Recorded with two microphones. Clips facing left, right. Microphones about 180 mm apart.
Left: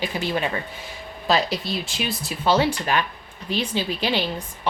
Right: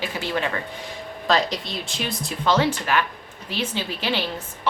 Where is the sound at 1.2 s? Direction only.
5° left (ahead or behind).